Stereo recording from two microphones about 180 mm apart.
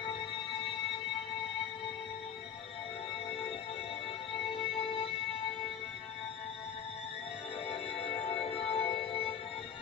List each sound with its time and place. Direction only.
4.3 s music: 30° left (ahead or behind)
8.0 s music: 30° left (ahead or behind)